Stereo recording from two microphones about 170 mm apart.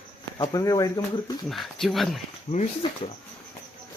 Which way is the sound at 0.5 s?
20° left (ahead or behind).